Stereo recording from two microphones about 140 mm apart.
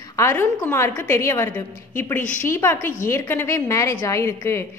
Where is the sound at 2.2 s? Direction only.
65° left (ahead or behind).